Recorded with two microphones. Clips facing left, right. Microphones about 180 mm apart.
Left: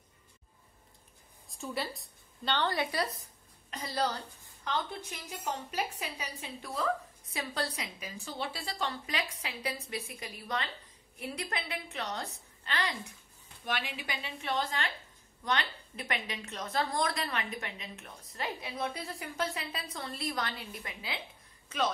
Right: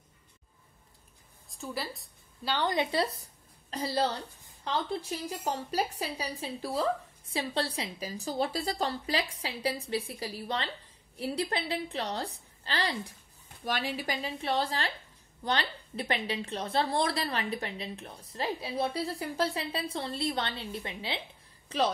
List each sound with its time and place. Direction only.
1.5 s a woman's voice: centre (ahead or behind); by 21.9 s 35° right (ahead or behind)